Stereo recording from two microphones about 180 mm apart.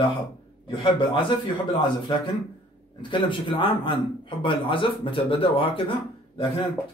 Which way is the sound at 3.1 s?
25° left (ahead or behind).